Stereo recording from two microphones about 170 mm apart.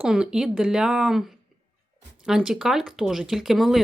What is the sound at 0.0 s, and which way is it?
Speech, 5° right (ahead or behind).